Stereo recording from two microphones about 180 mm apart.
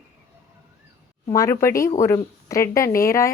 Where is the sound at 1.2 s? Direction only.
15° left (ahead or behind).